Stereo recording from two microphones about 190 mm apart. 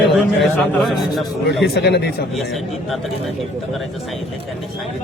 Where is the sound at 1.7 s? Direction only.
60° left (ahead or behind).